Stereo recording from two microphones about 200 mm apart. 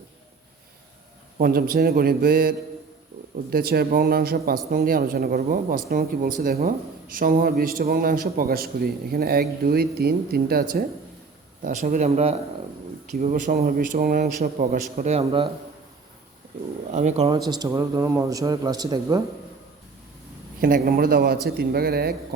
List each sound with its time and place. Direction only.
1.4 s a man's voice: 45° right (ahead or behind); by 15.4 s 30° right (ahead or behind)
16.9 s a man's voice: 35° right (ahead or behind)
17.3 s a man's voice: 20° right (ahead or behind)
20.6 s speech: 45° right (ahead or behind)